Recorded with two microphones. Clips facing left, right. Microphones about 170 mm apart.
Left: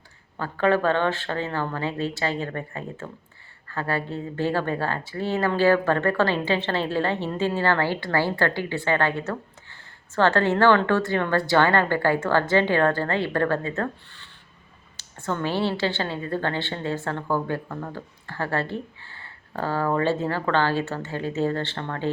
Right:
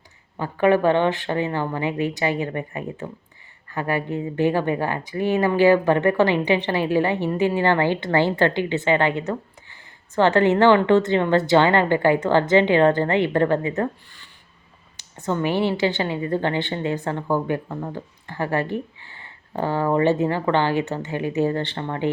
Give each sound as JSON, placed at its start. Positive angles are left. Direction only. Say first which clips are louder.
{"t": 0.3, "sound": "speech", "louder": "right 4 dB", "side_deg": -15}